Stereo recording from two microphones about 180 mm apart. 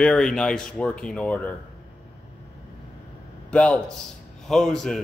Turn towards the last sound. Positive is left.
turn(degrees=0)  # may be behind; listen again after turning